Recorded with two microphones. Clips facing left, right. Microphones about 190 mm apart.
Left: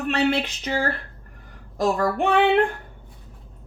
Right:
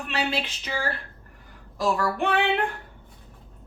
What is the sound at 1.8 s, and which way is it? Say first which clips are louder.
Speech: left 3 dB; 45° left (ahead or behind).